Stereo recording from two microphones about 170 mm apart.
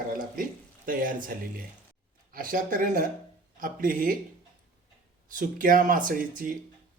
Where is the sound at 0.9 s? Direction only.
55° right (ahead or behind).